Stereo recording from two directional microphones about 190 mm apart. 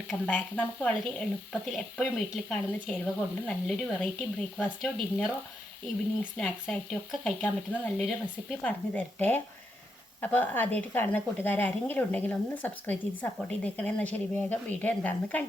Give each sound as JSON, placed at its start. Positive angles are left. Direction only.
{"t": 0.1, "sound": "speech", "side_deg": 5}
{"t": 6.3, "sound": "speech", "side_deg": 5}